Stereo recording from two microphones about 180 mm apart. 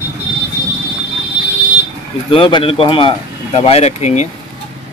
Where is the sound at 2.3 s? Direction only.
30° left (ahead or behind).